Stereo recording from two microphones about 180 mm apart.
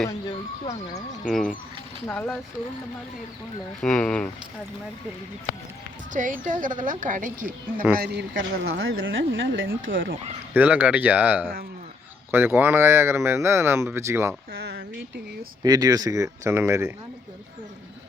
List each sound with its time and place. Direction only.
0.3 s speech: 30° left (ahead or behind)
1.3 s speech: 5° left (ahead or behind)
3.8 s speech: 5° left (ahead or behind)
6.1 s a woman's voice: 45° right (ahead or behind)
7.9 s a woman's voice: 65° right (ahead or behind); by 10.1 s 90° right
10.5 s speech: 10° right (ahead or behind)
14.5 s a sound: 65° right (ahead or behind)
15.6 s speech: 20° right (ahead or behind)